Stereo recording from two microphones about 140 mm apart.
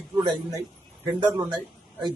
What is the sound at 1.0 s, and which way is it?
Speech, 25° right (ahead or behind).